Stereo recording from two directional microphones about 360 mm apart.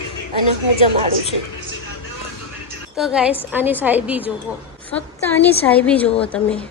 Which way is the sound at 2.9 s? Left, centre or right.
Centre.